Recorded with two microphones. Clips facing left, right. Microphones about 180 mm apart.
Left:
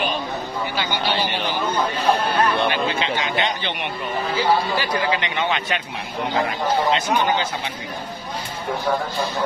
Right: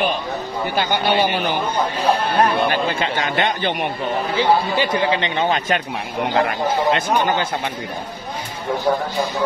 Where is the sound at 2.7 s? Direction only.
50° right (ahead or behind).